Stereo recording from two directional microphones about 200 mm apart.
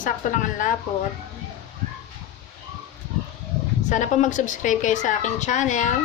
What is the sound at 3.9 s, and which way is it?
A woman's voice, 40° left (ahead or behind).